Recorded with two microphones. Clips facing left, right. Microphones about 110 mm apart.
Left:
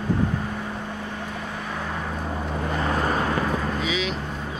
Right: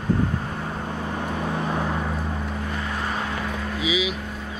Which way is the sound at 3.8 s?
5° right (ahead or behind).